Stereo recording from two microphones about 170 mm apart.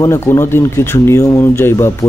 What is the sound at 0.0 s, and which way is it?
A man's voice, 15° left (ahead or behind).